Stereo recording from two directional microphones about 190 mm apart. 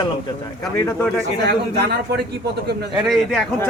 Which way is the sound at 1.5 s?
60° right (ahead or behind).